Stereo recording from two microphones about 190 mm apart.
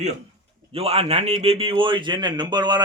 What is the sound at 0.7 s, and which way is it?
Speech, 30° right (ahead or behind).